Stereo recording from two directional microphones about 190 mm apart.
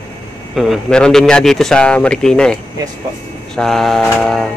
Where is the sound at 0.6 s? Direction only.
Centre (ahead or behind).